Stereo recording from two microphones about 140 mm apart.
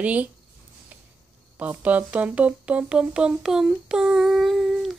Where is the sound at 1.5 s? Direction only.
10° right (ahead or behind).